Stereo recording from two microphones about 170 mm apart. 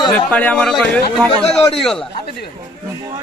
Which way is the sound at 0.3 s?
10° left (ahead or behind).